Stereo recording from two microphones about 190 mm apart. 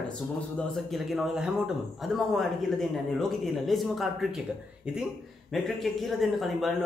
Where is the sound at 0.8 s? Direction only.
Centre (ahead or behind).